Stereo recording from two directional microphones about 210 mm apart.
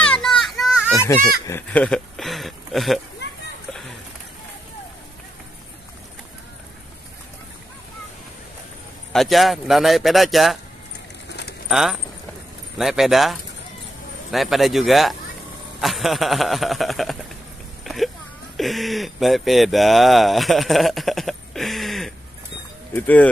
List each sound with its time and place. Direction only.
0.0 s children playing: 5° left (ahead or behind)
1.5 s speech: 5° left (ahead or behind)
9.1 s speech: centre (ahead or behind)
11.2 s a sound: 50° left (ahead or behind)
11.7 s speech: centre (ahead or behind)
17.8 s a sound: centre (ahead or behind)
18.6 s speech: centre (ahead or behind)